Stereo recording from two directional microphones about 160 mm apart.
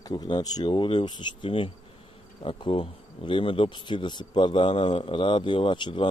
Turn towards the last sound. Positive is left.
turn(degrees=30)  # may be behind; listen again after turning